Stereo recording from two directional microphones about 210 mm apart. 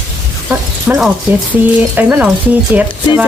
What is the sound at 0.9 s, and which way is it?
Speech, 5° right (ahead or behind).